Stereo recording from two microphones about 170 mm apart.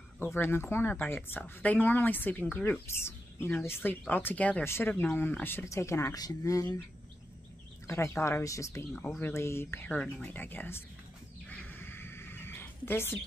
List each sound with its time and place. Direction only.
0.2 s speech: 15° left (ahead or behind)
7.8 s speech: 15° left (ahead or behind)
11.4 s a sound: 10° left (ahead or behind)